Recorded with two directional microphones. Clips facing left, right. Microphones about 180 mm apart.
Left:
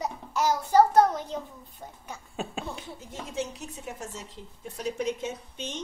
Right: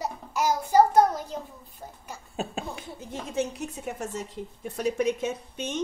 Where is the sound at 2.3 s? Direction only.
40° right (ahead or behind).